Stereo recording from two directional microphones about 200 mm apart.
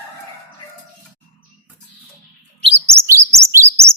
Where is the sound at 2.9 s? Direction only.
15° right (ahead or behind).